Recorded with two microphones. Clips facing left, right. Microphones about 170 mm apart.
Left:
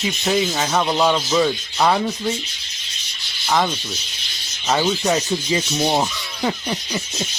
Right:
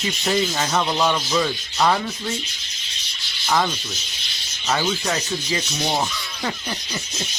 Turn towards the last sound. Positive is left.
turn(degrees=15)  # may be behind; listen again after turning